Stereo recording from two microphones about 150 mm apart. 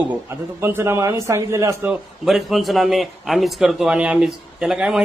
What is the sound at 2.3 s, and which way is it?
A man's voice, centre (ahead or behind).